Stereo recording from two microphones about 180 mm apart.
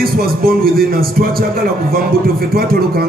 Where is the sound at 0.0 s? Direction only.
55° right (ahead or behind).